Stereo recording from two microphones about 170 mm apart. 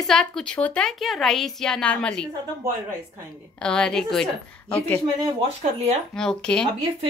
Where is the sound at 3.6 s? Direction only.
5° left (ahead or behind).